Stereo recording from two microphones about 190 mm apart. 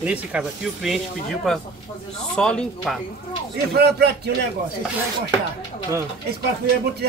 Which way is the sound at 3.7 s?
60° right (ahead or behind).